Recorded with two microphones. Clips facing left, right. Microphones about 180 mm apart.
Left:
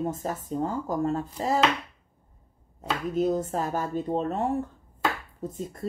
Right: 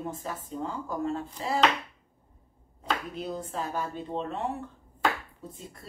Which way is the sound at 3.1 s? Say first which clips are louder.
Left 9 dB; 45° left (ahead or behind).